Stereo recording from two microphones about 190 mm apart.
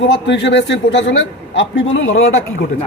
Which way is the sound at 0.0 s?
70° left (ahead or behind).